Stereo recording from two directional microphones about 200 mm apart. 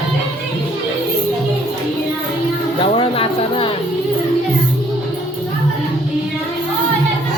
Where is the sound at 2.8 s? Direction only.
25° left (ahead or behind).